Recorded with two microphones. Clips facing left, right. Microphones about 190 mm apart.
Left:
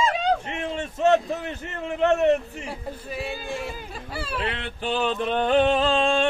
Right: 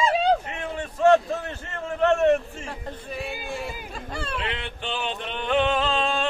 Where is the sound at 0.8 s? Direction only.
20° left (ahead or behind).